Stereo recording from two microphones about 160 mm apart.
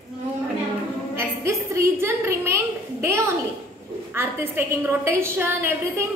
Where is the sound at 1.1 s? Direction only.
15° right (ahead or behind).